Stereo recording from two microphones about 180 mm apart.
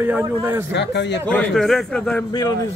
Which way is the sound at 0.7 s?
70° left (ahead or behind).